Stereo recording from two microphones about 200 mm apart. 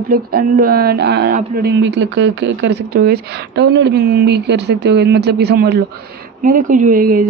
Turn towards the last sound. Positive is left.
turn(degrees=-45)  # may be behind; listen again after turning